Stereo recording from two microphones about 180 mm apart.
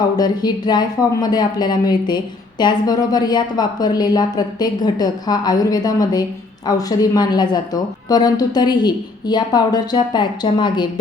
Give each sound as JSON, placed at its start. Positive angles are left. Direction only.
{"t": 0.0, "sound": "speech", "side_deg": 25}